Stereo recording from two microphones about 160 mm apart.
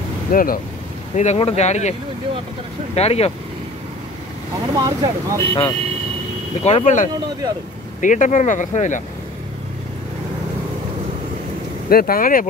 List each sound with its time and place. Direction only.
0.3 s speech: 60° left (ahead or behind)
1.1 s speech: 45° left (ahead or behind)
4.7 s speech: 25° right (ahead or behind)
5.5 s speech: 30° left (ahead or behind)
6.6 s speech: 45° left (ahead or behind)
11.9 s speech: 65° left (ahead or behind)